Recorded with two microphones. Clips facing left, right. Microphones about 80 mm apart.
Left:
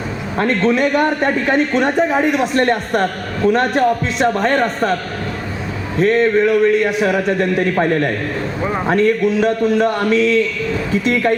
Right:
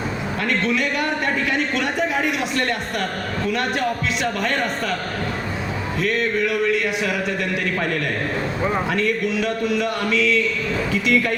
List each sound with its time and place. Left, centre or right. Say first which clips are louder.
0.3 s a man's voice: left 7 dB; left
6.0 s a man's voice: left 9 dB; left